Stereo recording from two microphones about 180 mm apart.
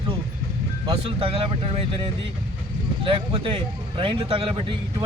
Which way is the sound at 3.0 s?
30° right (ahead or behind).